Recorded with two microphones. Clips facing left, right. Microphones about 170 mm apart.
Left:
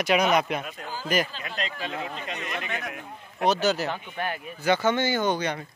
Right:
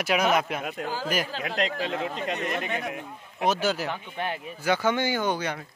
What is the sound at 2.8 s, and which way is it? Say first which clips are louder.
Speech: right 3 dB; 25° right (ahead or behind).